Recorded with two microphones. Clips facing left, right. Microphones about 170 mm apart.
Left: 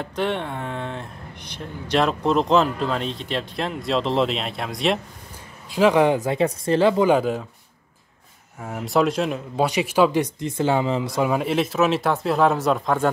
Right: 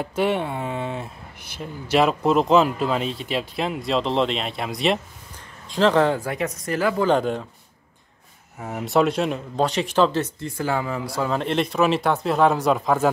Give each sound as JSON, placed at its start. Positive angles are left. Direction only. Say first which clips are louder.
{"t": 0.0, "sound": "speech", "louder": "right 3 dB", "side_deg": -5}
{"t": 5.7, "sound": "speech", "louder": "left 1 dB", "side_deg": 10}
{"t": 7.1, "sound": "speech", "louder": "left 1 dB", "side_deg": 5}
{"t": 8.5, "sound": "speech", "louder": "right 1 dB", "side_deg": 0}